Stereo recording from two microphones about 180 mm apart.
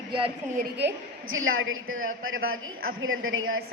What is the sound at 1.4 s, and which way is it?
A woman's voice, 90° right.